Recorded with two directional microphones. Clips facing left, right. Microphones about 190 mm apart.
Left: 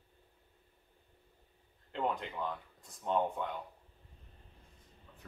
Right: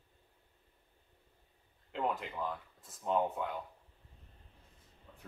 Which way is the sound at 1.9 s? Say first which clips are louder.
Even; 5° right (ahead or behind).